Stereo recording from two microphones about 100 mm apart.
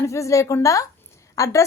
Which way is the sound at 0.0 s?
30° left (ahead or behind).